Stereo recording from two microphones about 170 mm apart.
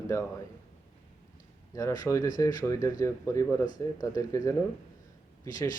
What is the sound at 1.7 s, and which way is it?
Speech, 15° left (ahead or behind).